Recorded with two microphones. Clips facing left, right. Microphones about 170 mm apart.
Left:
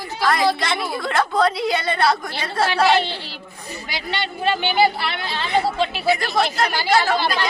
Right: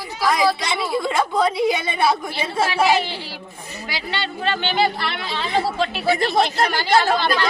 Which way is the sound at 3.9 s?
15° left (ahead or behind).